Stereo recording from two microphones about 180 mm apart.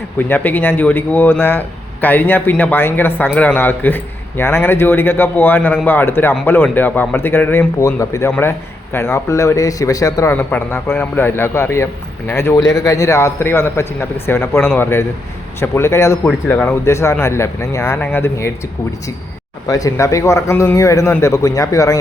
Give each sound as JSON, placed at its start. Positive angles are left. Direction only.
{"t": 0.2, "sound": "speech", "side_deg": 10}
{"t": 19.6, "sound": "speech", "side_deg": 20}